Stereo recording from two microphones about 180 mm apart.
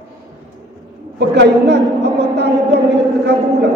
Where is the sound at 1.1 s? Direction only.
70° right (ahead or behind).